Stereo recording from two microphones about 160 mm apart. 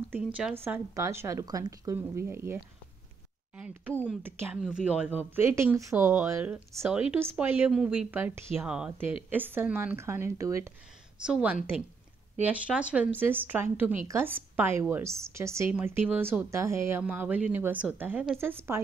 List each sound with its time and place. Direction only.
0.1 s speech: 5° right (ahead or behind)
3.9 s speech: 10° left (ahead or behind)
4.2 s speech: 10° right (ahead or behind)
11.2 s a woman's voice: 5° right (ahead or behind)